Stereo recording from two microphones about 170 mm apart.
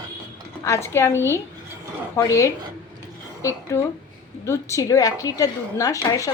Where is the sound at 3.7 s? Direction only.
15° left (ahead or behind).